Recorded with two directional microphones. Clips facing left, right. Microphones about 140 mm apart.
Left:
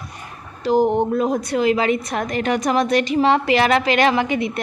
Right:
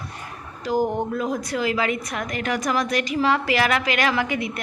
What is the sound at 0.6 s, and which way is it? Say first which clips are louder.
A woman's voice: left 6 dB; 20° left (ahead or behind).